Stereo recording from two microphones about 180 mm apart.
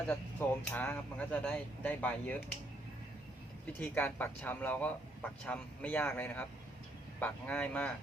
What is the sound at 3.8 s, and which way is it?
Speech, 10° left (ahead or behind).